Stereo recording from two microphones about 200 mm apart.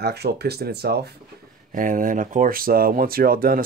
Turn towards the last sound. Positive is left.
turn(degrees=-45)  # may be behind; listen again after turning